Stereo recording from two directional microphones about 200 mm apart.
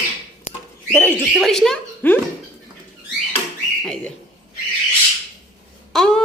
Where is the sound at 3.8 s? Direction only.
Centre (ahead or behind).